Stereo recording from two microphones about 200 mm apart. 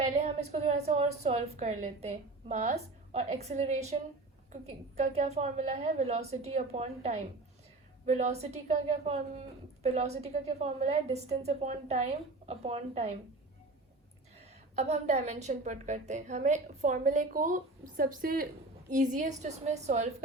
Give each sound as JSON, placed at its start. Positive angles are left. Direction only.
{"t": 0.2, "sound": "a woman's voice", "side_deg": -35}
{"t": 14.8, "sound": "a woman's voice", "side_deg": -35}